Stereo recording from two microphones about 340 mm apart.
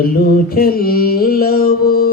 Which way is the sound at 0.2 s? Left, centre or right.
Left.